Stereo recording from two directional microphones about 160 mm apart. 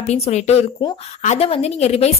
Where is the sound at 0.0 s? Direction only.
45° left (ahead or behind).